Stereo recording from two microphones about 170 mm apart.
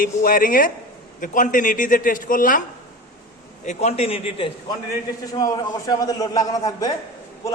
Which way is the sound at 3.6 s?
40° left (ahead or behind).